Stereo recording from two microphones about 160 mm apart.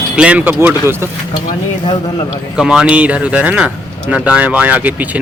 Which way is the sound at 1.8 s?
35° left (ahead or behind).